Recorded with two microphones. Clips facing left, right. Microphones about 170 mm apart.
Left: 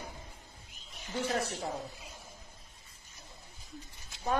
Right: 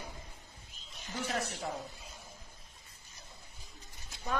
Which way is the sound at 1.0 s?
30° left (ahead or behind).